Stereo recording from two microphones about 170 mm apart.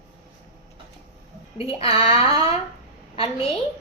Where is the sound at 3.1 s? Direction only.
35° left (ahead or behind).